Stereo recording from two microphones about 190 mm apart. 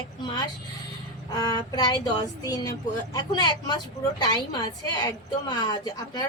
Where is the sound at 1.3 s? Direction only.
20° left (ahead or behind).